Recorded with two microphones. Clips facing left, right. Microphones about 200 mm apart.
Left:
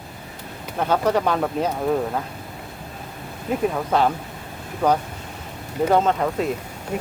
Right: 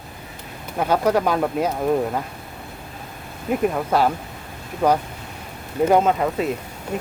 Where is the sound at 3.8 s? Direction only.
5° right (ahead or behind).